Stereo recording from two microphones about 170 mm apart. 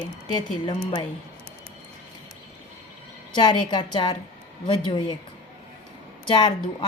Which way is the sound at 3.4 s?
25° left (ahead or behind).